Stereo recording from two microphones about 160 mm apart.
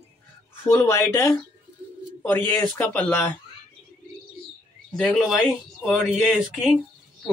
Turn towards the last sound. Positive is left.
turn(degrees=0)  # may be behind; listen again after turning